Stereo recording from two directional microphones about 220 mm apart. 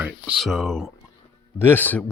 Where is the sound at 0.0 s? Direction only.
Centre (ahead or behind).